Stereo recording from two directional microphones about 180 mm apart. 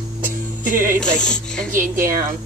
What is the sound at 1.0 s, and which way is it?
Speech, 5° left (ahead or behind).